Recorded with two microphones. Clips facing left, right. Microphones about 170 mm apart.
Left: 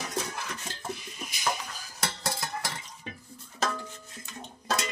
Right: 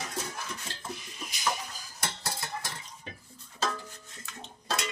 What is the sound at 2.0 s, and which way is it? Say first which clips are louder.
Stir: left 3 dB; 90° left.